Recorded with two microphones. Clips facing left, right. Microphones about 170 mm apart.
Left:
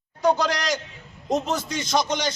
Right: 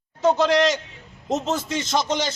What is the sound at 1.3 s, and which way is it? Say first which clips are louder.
Speech: right 1 dB; centre (ahead or behind).